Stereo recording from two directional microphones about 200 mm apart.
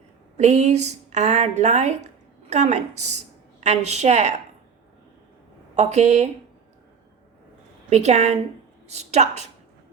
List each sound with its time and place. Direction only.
0.3 s a woman's voice: 35° right (ahead or behind)
5.7 s speech: 35° right (ahead or behind)
7.9 s speech: 35° right (ahead or behind)